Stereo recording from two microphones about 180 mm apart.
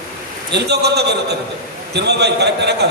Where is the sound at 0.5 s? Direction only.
65° right (ahead or behind).